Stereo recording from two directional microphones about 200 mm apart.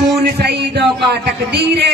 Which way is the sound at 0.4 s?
55° right (ahead or behind).